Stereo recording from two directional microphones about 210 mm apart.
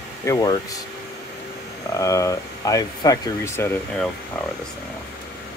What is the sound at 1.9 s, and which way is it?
Speech, 15° left (ahead or behind).